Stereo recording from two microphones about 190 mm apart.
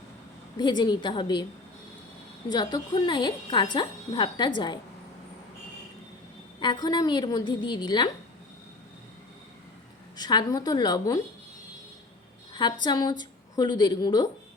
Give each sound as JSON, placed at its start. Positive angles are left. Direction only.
{"t": 0.5, "sound": "speech", "side_deg": 20}
{"t": 2.5, "sound": "speech", "side_deg": 20}
{"t": 6.6, "sound": "speech", "side_deg": 25}
{"t": 10.2, "sound": "speech", "side_deg": 20}
{"t": 12.8, "sound": "speech", "side_deg": 20}